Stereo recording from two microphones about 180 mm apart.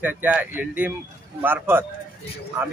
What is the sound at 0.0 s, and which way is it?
Speech, 10° right (ahead or behind).